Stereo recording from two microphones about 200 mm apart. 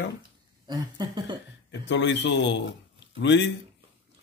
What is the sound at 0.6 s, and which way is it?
Speech, 20° right (ahead or behind).